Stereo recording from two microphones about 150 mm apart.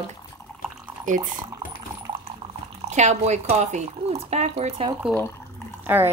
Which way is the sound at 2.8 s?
50° right (ahead or behind).